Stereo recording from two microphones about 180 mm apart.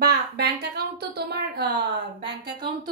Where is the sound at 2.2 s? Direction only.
25° right (ahead or behind).